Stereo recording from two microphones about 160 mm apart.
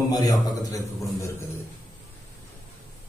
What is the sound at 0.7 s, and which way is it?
Speech, 20° left (ahead or behind).